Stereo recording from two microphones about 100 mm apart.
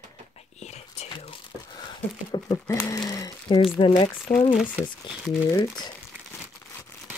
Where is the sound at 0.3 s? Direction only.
90° left.